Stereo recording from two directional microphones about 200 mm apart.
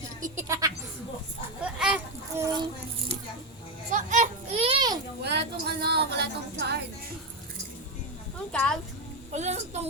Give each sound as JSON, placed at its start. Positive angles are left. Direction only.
{"t": 0.3, "sound": "a sound", "side_deg": -15}
{"t": 3.9, "sound": "children playing", "side_deg": -40}
{"t": 5.2, "sound": "music", "side_deg": -55}
{"t": 8.5, "sound": "speech", "side_deg": 5}
{"t": 9.3, "sound": "a child's voice", "side_deg": -35}